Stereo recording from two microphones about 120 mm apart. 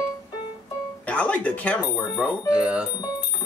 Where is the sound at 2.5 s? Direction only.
10° right (ahead or behind).